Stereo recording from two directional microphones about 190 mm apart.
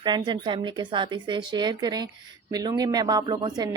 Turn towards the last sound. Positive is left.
turn(degrees=-20)  # may be behind; listen again after turning